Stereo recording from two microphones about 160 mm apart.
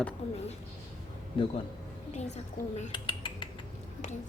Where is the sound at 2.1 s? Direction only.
45° left (ahead or behind).